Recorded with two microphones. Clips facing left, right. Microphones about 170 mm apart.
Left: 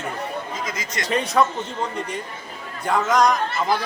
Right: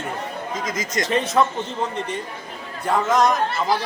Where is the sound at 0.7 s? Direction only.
45° right (ahead or behind).